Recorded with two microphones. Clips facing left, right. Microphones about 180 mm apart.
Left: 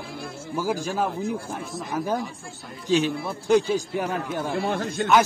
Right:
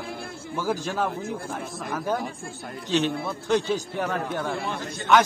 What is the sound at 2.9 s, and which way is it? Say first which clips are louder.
A man's voice: left 2 dB; 10° left (ahead or behind).